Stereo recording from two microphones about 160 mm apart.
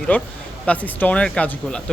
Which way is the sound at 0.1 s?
10° left (ahead or behind).